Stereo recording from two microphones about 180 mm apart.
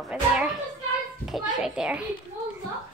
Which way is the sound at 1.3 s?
5° right (ahead or behind).